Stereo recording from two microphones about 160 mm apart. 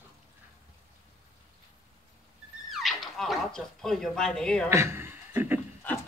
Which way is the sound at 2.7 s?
Centre (ahead or behind).